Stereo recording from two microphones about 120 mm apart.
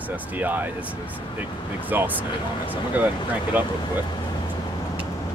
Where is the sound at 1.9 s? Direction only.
15° right (ahead or behind).